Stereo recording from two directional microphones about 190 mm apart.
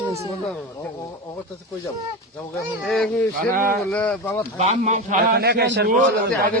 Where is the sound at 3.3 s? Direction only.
45° right (ahead or behind).